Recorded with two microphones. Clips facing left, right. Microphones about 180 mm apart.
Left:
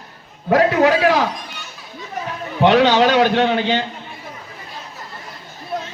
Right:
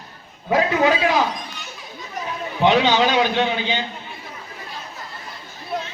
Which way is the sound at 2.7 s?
70° left (ahead or behind).